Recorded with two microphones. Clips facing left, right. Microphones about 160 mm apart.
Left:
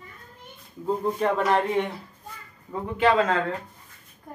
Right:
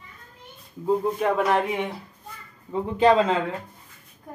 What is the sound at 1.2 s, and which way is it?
Speech, 5° right (ahead or behind).